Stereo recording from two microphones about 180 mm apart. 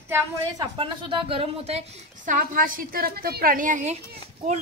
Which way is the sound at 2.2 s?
50° right (ahead or behind).